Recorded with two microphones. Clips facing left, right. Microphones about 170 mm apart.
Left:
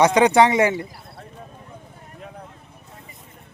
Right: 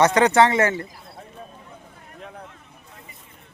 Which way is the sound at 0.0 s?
10° left (ahead or behind).